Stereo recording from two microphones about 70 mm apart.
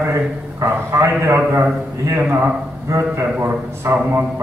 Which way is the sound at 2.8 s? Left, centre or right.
Right.